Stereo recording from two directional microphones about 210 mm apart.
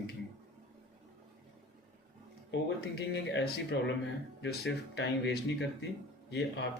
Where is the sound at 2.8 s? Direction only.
55° left (ahead or behind).